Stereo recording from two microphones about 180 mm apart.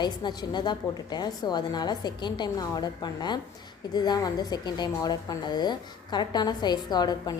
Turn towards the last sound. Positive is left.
turn(degrees=20)  # may be behind; listen again after turning